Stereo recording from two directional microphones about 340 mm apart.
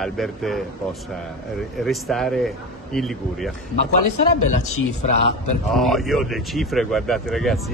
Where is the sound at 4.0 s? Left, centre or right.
Left.